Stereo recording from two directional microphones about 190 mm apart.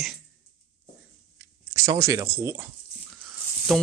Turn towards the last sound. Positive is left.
turn(degrees=0)  # may be behind; listen again after turning